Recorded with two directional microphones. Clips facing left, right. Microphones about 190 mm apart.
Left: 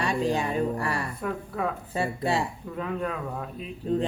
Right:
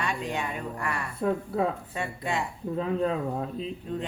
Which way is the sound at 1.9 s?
35° left (ahead or behind).